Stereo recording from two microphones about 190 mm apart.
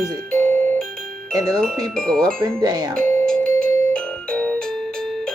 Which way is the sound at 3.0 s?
5° left (ahead or behind).